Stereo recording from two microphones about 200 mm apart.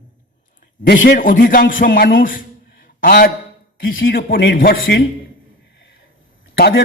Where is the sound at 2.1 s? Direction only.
45° left (ahead or behind).